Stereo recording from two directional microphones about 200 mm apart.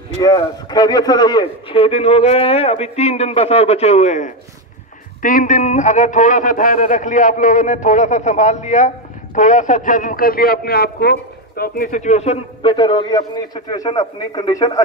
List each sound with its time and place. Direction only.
0.2 s a man's voice: 15° left (ahead or behind)